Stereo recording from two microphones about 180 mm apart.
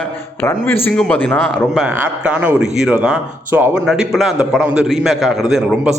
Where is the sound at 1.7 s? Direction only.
5° right (ahead or behind).